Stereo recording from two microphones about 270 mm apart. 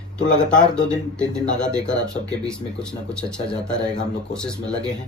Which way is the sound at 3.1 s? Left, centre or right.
Centre.